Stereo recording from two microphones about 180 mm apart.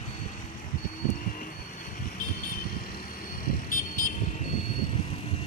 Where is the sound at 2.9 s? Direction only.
55° left (ahead or behind).